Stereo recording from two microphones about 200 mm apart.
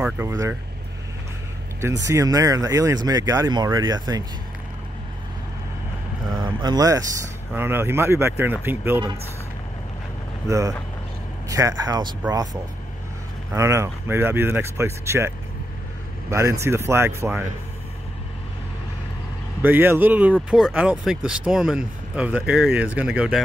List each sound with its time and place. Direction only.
0.0 s speech: 10° right (ahead or behind)
2.0 s speech: 15° right (ahead or behind)
6.4 s speech: 20° right (ahead or behind)
10.4 s speech: 15° right (ahead or behind)
13.5 s speech: 15° right (ahead or behind)
19.6 s speech: 10° right (ahead or behind)